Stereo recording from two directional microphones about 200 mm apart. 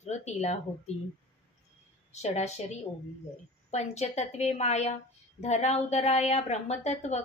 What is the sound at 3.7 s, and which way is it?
A woman's voice, 35° left (ahead or behind).